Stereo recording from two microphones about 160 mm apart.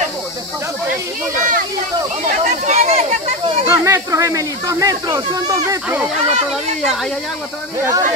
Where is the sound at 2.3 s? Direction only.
45° right (ahead or behind).